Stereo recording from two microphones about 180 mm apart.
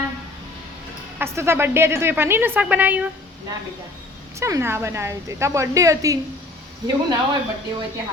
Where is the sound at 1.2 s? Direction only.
15° right (ahead or behind).